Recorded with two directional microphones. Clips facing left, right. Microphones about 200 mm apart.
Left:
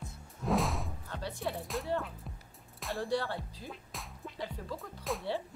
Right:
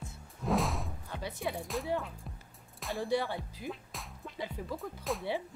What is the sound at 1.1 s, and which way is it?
Speech, 10° right (ahead or behind).